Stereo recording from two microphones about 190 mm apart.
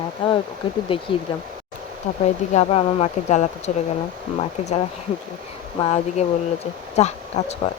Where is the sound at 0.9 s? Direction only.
25° left (ahead or behind).